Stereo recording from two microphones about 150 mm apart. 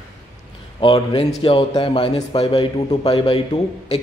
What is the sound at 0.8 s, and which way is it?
A man's voice, 40° left (ahead or behind).